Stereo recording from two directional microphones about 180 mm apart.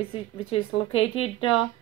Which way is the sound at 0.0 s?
30° left (ahead or behind).